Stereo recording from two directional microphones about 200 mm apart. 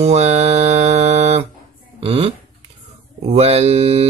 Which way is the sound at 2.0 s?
30° right (ahead or behind).